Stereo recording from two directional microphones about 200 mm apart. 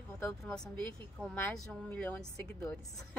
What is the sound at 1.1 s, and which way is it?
A woman's voice, centre (ahead or behind).